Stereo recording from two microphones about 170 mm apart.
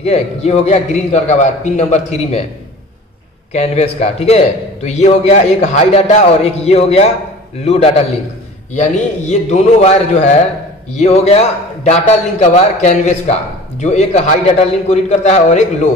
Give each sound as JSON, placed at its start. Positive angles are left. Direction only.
{"t": 0.0, "sound": "a man's voice", "side_deg": 40}
{"t": 3.5, "sound": "a man's voice", "side_deg": 40}